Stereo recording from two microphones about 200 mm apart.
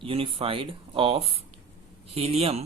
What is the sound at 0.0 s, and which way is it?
Speech, 25° right (ahead or behind).